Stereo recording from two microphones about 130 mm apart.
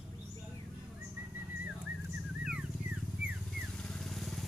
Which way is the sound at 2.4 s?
10° right (ahead or behind).